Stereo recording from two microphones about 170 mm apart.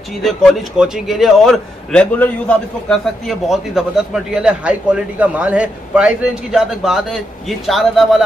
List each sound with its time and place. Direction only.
0.2 s a man's voice: centre (ahead or behind)